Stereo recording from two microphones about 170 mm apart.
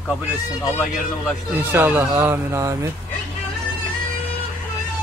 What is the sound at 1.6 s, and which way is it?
Speech, 10° right (ahead or behind).